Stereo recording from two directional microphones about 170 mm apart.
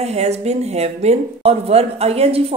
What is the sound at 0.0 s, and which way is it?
Speech, 40° right (ahead or behind).